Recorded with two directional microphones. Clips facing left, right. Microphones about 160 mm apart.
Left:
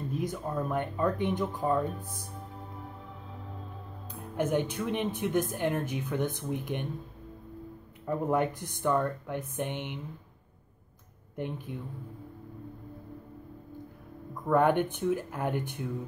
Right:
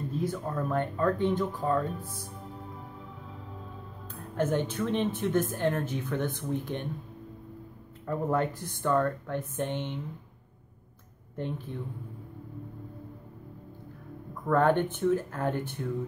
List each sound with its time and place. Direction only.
0.1 s speech: 15° left (ahead or behind)
4.1 s speech: 15° left (ahead or behind)
8.3 s speech: 15° left (ahead or behind)
11.3 s speech: 15° left (ahead or behind)
14.5 s speech: 15° left (ahead or behind)